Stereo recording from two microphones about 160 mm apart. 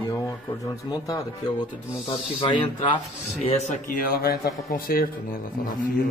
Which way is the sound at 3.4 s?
45° left (ahead or behind).